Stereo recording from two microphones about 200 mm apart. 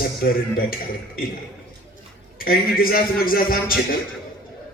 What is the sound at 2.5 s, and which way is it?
A man's voice, 45° left (ahead or behind).